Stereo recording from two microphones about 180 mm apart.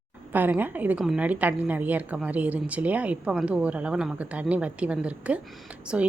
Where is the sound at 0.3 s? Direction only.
10° right (ahead or behind).